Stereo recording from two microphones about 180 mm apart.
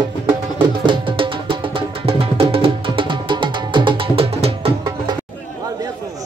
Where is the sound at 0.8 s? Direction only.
30° right (ahead or behind).